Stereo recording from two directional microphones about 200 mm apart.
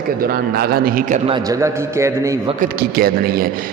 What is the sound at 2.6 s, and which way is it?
Mantra, 50° right (ahead or behind).